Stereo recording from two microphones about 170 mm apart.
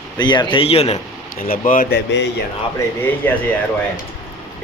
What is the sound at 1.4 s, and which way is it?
Speech, 55° left (ahead or behind).